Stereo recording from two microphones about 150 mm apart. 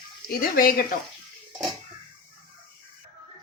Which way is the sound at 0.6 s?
70° left (ahead or behind).